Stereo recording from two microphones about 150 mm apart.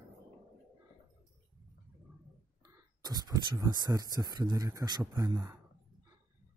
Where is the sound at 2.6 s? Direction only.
25° right (ahead or behind).